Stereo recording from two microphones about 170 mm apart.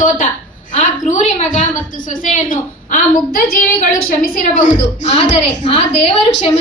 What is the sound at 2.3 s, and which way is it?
A woman's voice, 50° left (ahead or behind).